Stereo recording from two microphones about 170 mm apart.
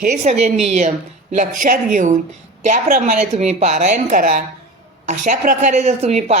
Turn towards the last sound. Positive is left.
turn(degrees=-40)  # may be behind; listen again after turning